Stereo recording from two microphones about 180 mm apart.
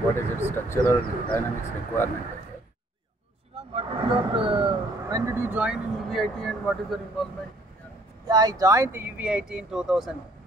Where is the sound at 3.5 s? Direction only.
30° right (ahead or behind); by 7.3 s centre (ahead or behind).